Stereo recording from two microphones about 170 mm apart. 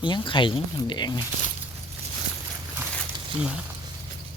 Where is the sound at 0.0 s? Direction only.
30° left (ahead or behind).